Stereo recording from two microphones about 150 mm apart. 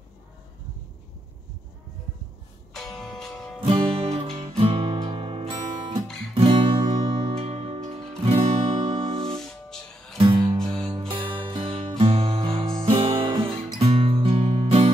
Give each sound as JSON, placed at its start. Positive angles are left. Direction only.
{"t": 2.7, "sound": "music", "side_deg": 0}
{"t": 3.6, "sound": "music", "side_deg": -35}
{"t": 6.3, "sound": "guitar", "side_deg": -35}
{"t": 7.3, "sound": "music", "side_deg": -40}
{"t": 9.4, "sound": "music", "side_deg": 5}
{"t": 10.1, "sound": "music", "side_deg": -35}